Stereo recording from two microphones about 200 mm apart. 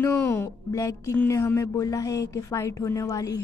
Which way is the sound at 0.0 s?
10° left (ahead or behind).